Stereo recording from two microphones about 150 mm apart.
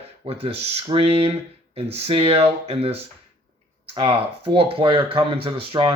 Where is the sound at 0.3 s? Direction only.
40° right (ahead or behind).